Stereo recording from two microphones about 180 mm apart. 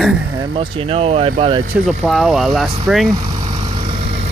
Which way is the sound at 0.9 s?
30° right (ahead or behind).